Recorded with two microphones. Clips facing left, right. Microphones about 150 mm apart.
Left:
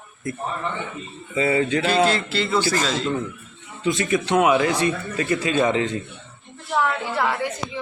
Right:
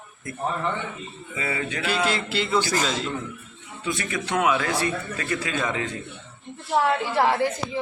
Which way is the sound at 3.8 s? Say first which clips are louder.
Left 7 dB; 20° left (ahead or behind).